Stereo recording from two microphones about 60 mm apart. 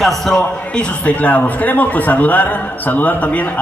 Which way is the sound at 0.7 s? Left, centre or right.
Left.